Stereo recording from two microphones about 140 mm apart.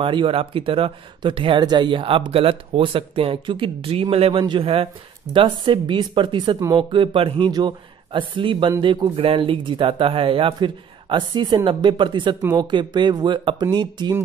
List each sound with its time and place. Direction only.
0.0 s a man's voice: 40° right (ahead or behind)